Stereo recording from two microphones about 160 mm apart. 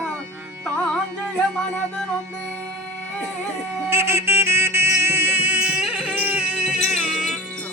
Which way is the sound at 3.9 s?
15° right (ahead or behind).